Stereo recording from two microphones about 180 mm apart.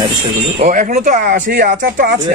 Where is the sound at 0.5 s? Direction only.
50° right (ahead or behind).